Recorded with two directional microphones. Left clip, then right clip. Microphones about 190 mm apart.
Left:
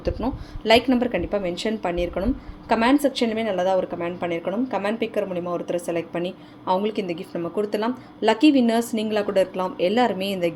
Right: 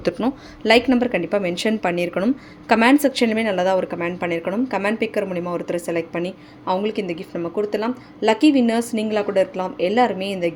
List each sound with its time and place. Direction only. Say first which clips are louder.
0.0 s a woman's voice: right 4 dB; 30° right (ahead or behind)
0.6 s speech: right 2 dB; 15° right (ahead or behind)